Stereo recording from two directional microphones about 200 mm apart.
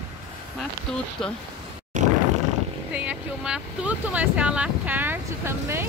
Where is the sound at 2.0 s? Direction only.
35° right (ahead or behind).